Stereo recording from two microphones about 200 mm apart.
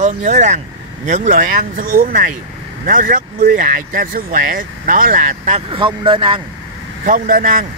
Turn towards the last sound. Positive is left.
turn(degrees=-40)  # may be behind; listen again after turning